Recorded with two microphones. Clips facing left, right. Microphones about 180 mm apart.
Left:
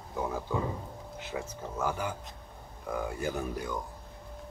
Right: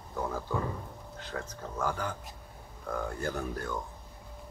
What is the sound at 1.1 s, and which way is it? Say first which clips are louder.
Speech: left 2 dB; 10° left (ahead or behind).